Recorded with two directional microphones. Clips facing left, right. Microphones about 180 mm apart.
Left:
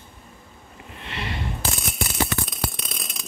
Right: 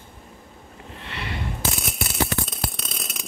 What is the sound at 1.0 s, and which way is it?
Sniff, 25° left (ahead or behind).